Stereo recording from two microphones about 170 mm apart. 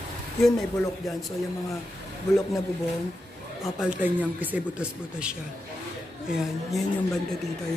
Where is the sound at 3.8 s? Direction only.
10° right (ahead or behind).